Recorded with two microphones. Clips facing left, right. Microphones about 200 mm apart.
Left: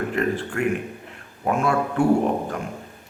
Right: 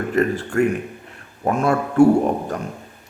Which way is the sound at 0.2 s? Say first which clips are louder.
Right 7 dB; 40° right (ahead or behind).